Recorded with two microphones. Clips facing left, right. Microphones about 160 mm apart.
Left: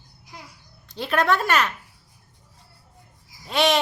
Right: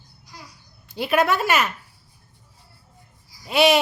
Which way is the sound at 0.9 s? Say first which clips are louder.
Right 2 dB; 10° right (ahead or behind).